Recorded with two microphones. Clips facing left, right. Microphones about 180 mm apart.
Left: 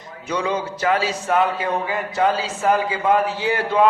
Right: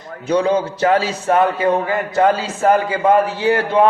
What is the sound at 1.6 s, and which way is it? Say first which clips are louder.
A man's voice: right 6 dB; 50° right (ahead or behind).